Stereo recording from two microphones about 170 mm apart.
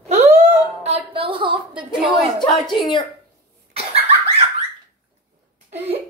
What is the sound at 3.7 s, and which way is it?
Cough, 35° right (ahead or behind).